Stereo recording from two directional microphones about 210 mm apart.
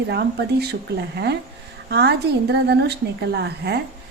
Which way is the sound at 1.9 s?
55° right (ahead or behind).